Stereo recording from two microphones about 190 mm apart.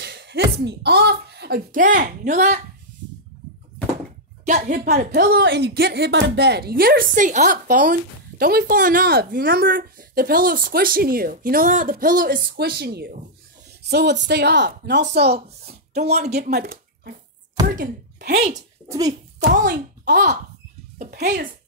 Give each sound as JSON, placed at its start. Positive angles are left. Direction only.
{"t": 0.0, "sound": "speech", "side_deg": -60}
{"t": 4.5, "sound": "a woman's voice", "side_deg": -40}
{"t": 15.4, "sound": "a child's voice", "side_deg": -35}
{"t": 16.4, "sound": "speech", "side_deg": -55}
{"t": 18.9, "sound": "speech", "side_deg": -20}
{"t": 19.5, "sound": "a woman's voice", "side_deg": -50}